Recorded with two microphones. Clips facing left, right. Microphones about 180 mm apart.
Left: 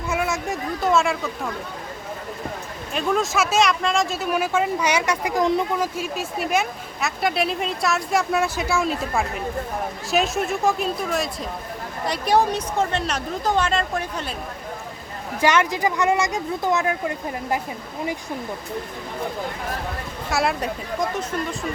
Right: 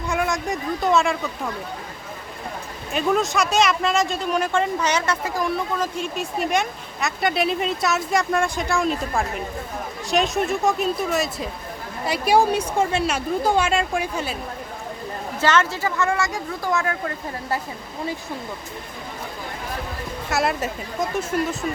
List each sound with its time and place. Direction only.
0.1 s speech: 5° left (ahead or behind)
2.9 s speech: centre (ahead or behind)
15.4 s speech: 15° left (ahead or behind)
20.3 s speech: centre (ahead or behind)